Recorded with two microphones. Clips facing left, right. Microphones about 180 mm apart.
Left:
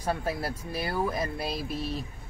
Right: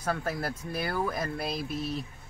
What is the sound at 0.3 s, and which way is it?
Speech, 25° left (ahead or behind).